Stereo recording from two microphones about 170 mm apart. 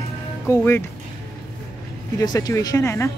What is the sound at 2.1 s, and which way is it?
Speech, 20° left (ahead or behind).